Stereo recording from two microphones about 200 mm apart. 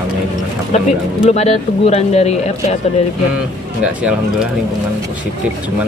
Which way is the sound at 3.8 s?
5° right (ahead or behind).